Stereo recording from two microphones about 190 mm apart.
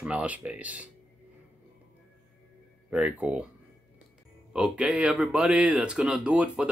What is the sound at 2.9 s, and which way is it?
Speech, 5° right (ahead or behind).